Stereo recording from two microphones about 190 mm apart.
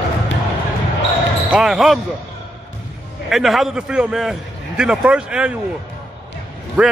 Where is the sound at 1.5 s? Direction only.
Centre (ahead or behind).